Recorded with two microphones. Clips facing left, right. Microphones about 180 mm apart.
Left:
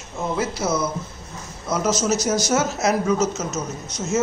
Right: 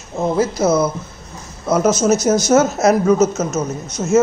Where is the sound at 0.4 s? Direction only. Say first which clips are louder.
Right 8 dB; 50° right (ahead or behind).